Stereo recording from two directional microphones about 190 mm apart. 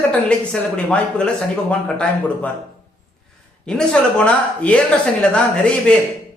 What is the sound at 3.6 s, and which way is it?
Speech, 5° left (ahead or behind).